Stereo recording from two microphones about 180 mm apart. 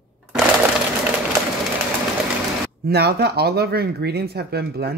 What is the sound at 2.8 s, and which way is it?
Speech, 60° right (ahead or behind).